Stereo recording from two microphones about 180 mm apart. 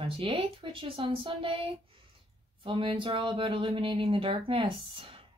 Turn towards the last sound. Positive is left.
turn(degrees=-30)  # may be behind; listen again after turning